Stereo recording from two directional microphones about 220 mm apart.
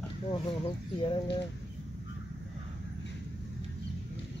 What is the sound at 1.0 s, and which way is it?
Speech, 20° left (ahead or behind).